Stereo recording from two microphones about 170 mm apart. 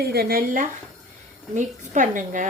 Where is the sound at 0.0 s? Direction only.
70° right (ahead or behind).